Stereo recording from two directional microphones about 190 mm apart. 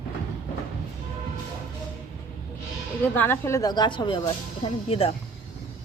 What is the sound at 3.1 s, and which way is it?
Speech, 10° left (ahead or behind).